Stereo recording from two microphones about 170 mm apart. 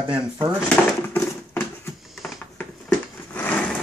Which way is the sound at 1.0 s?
15° left (ahead or behind).